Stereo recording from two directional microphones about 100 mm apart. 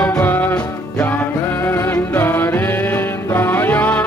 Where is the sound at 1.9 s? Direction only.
20° left (ahead or behind).